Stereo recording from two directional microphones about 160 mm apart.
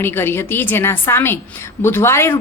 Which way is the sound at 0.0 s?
15° left (ahead or behind).